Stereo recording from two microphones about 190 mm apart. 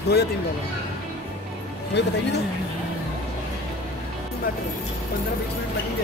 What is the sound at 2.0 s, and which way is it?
Speech, 65° left (ahead or behind).